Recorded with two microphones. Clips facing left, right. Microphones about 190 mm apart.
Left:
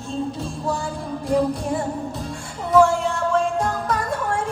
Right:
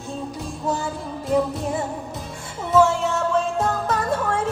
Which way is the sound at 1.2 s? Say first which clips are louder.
Left 1 dB; 20° right (ahead or behind).